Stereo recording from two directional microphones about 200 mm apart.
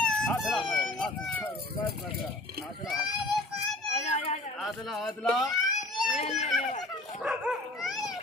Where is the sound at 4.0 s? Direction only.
35° left (ahead or behind).